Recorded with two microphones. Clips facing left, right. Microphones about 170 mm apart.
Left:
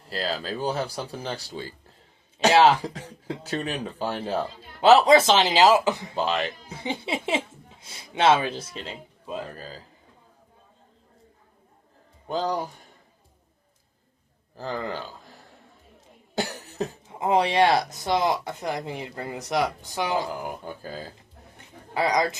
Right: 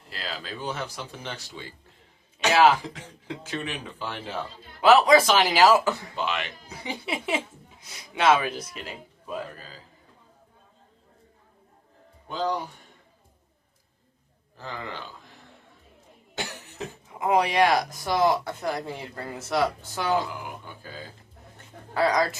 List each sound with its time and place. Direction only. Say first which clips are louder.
0.1 s speech: left 7 dB; 35° left (ahead or behind)
4.8 s speech: left 1 dB; 25° left (ahead or behind)
6.1 s speech: left 4 dB; 35° left (ahead or behind)
12.3 s speech: left 1 dB; 40° left (ahead or behind)
14.5 s speech: left 6 dB; 35° left (ahead or behind)
16.3 s speech: left 6 dB; 35° left (ahead or behind); by 20.1 s 15° left (ahead or behind)
20.3 s speech: left 5 dB; 40° left (ahead or behind)
21.9 s speech: even; 15° left (ahead or behind)